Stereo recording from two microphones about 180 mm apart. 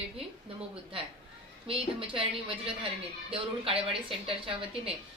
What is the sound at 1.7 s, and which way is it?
A woman's voice, 30° right (ahead or behind).